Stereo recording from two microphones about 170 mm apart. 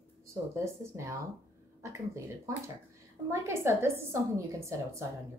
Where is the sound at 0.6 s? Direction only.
15° right (ahead or behind).